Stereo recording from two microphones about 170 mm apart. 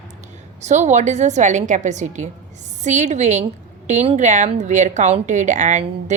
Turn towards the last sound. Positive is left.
turn(degrees=-45)  # may be behind; listen again after turning